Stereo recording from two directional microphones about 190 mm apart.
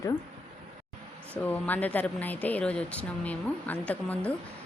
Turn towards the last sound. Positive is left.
turn(degrees=10)  # may be behind; listen again after turning